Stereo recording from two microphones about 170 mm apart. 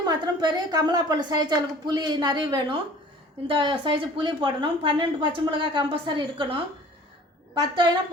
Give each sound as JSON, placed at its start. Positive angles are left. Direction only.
{"t": 0.0, "sound": "a woman's voice", "side_deg": -25}